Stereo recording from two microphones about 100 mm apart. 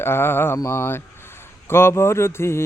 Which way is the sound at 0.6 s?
25° left (ahead or behind).